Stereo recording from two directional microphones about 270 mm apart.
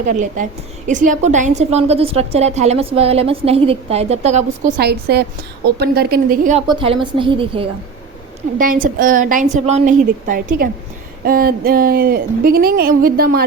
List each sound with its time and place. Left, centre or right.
0.1 s a woman's voice: right
8.5 s a woman's voice: right